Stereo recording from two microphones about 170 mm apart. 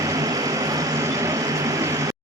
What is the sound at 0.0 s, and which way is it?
Vehicle, 20° right (ahead or behind).